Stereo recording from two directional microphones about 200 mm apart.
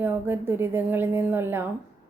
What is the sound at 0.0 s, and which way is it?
A woman's voice, 10° right (ahead or behind).